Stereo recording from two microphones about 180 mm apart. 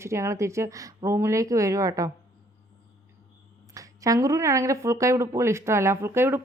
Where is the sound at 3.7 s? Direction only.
20° right (ahead or behind).